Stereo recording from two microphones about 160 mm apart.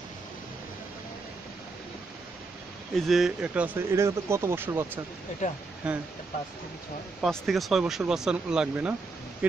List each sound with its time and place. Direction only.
2.9 s speech: centre (ahead or behind)
7.2 s speech: centre (ahead or behind)